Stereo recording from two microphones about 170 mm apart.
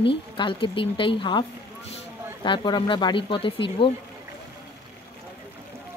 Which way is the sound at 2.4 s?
25° left (ahead or behind).